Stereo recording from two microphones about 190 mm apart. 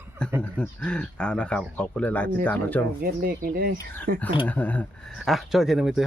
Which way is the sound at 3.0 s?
50° right (ahead or behind).